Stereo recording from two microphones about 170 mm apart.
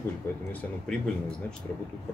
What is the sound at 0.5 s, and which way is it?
Speech, 5° left (ahead or behind).